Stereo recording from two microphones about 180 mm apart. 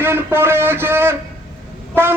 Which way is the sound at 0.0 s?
10° right (ahead or behind).